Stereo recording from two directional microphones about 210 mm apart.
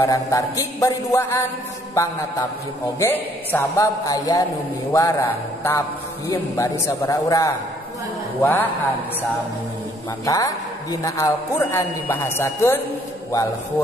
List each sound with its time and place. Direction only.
0.0 s a man's voice: 15° left (ahead or behind)
3.0 s a man's voice: 10° left (ahead or behind)
10.2 s a man's voice: 15° left (ahead or behind)